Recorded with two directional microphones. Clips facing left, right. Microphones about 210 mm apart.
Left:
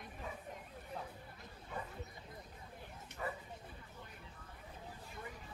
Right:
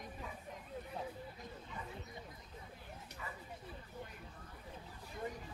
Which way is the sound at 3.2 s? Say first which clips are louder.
Left 8 dB; 45° left (ahead or behind).